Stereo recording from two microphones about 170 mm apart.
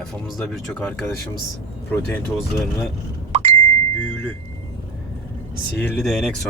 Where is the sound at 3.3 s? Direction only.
40° right (ahead or behind).